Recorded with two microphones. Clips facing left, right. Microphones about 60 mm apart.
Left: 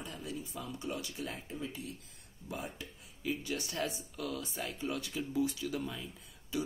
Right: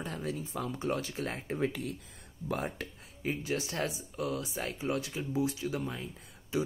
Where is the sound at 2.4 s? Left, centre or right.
Right.